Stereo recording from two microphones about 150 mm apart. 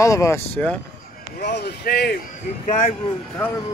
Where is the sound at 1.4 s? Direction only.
90° left.